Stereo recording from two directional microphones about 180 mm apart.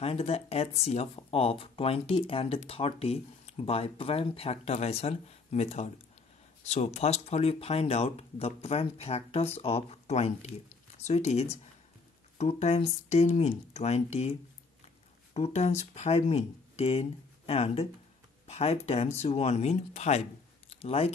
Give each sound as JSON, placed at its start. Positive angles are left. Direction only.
{"t": 0.0, "sound": "speech", "side_deg": 35}
{"t": 15.3, "sound": "speech", "side_deg": 35}